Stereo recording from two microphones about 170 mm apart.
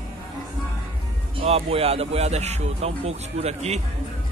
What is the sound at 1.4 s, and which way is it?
Speech, 35° right (ahead or behind).